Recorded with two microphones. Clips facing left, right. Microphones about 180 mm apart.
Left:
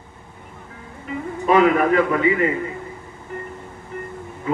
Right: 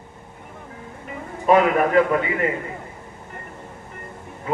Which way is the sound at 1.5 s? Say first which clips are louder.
Left 1 dB; 45° right (ahead or behind).